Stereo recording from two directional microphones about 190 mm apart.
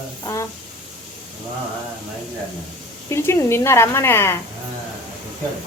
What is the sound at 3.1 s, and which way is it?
Speech, 15° left (ahead or behind).